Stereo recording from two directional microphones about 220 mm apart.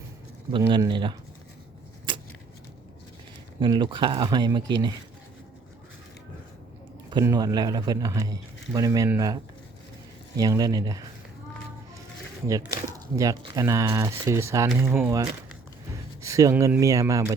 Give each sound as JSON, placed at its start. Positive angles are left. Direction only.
{"t": 0.7, "sound": "speech", "side_deg": -20}
{"t": 3.6, "sound": "speech", "side_deg": -20}
{"t": 7.1, "sound": "speech", "side_deg": -20}
{"t": 12.5, "sound": "speech", "side_deg": -15}